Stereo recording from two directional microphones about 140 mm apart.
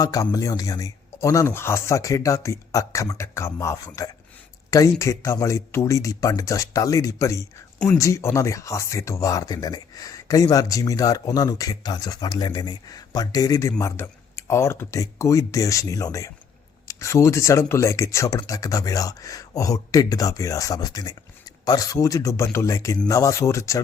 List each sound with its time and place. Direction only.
0.0 s speech: 25° left (ahead or behind)